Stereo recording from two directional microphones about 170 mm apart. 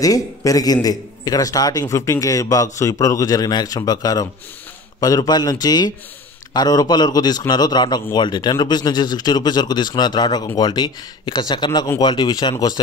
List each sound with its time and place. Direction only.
0.0 s a man's voice: 20° left (ahead or behind)